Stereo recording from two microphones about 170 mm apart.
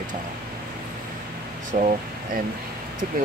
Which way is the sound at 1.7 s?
50° right (ahead or behind).